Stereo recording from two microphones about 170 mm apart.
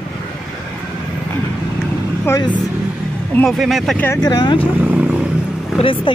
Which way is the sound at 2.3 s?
25° left (ahead or behind).